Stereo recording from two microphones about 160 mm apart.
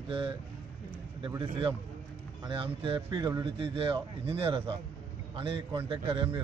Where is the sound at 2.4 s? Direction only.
30° right (ahead or behind).